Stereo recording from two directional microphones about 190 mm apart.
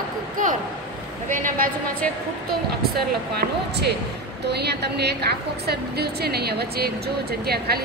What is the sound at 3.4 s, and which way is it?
A woman's voice, 60° right (ahead or behind).